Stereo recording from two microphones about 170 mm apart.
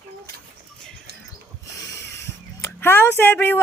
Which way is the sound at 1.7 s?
20° left (ahead or behind).